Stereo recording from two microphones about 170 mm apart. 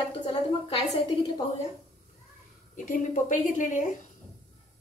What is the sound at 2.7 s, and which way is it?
A woman's voice, 50° left (ahead or behind).